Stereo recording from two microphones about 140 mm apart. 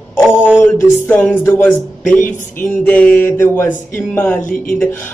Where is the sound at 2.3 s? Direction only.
60° left (ahead or behind).